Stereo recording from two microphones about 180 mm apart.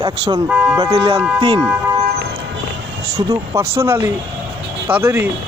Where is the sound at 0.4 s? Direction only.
10° right (ahead or behind).